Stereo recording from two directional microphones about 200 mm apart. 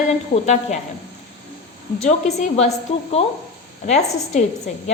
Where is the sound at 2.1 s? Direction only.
35° left (ahead or behind).